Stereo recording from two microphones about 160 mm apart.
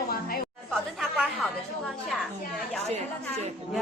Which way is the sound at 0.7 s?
Centre (ahead or behind).